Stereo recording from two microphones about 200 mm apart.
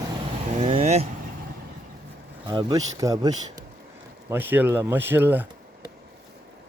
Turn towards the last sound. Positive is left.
turn(degrees=-10)  # may be behind; listen again after turning